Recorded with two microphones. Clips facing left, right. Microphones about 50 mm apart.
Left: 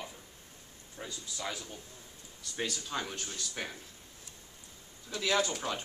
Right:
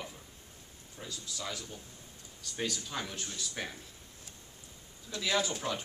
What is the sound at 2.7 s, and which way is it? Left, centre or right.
Speech, centre.